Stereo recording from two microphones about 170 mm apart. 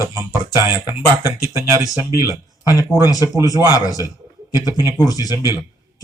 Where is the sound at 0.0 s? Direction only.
15° right (ahead or behind).